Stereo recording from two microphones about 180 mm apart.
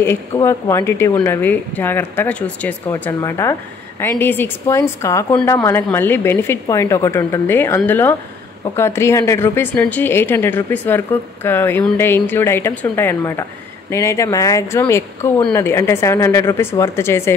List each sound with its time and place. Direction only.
0.0 s a woman's voice: 15° left (ahead or behind)